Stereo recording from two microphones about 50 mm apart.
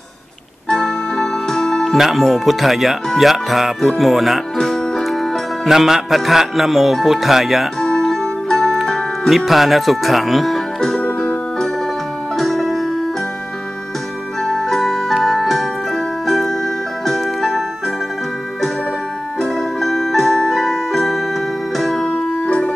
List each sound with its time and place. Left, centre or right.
0.7 s music: centre
2.0 s speech: centre
4.6 s music: centre
5.7 s speech: centre
7.8 s music: centre
9.3 s speech: centre
12.4 s music: centre
14.4 s music: centre
19.4 s music: centre
22.0 s music: left